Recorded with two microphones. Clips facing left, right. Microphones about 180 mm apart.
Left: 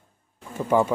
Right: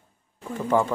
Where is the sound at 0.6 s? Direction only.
10° left (ahead or behind).